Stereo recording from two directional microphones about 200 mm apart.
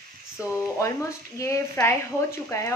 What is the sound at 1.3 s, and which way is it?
Speech, 15° left (ahead or behind).